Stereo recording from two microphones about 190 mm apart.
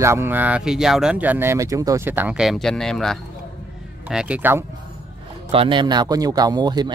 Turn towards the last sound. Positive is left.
turn(degrees=-20)  # may be behind; listen again after turning